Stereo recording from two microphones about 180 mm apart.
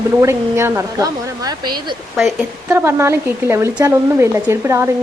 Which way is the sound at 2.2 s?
5° right (ahead or behind).